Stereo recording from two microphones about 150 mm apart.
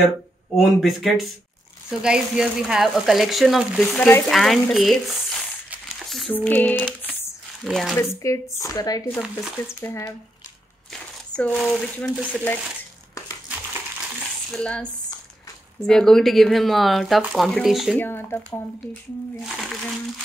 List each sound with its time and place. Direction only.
0.6 s speech: centre (ahead or behind)
6.0 s a sound: centre (ahead or behind)
6.3 s a sound: 10° left (ahead or behind)
7.6 s speech: centre (ahead or behind)
8.0 s speech: 20° left (ahead or behind)
9.2 s speech: 5° right (ahead or behind)
9.8 s speech: 15° left (ahead or behind)
10.9 s crumpling: 5° left (ahead or behind)
12.3 s speech: 10° left (ahead or behind)
14.5 s speech: 5° left (ahead or behind)
17.9 s speech: 15° left (ahead or behind)
19.4 s speech: centre (ahead or behind)